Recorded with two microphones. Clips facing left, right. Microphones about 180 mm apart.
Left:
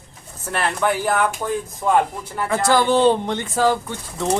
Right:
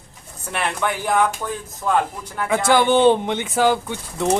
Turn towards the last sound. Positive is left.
turn(degrees=0)  # may be behind; listen again after turning